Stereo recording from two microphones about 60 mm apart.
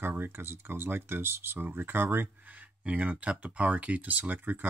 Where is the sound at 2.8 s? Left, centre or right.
Right.